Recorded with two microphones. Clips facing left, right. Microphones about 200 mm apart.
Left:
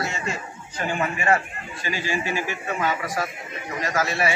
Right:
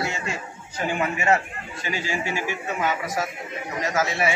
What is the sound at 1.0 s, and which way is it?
A man's voice, 10° right (ahead or behind).